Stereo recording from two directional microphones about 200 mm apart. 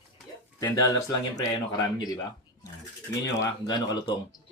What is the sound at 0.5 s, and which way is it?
Speech, 15° left (ahead or behind).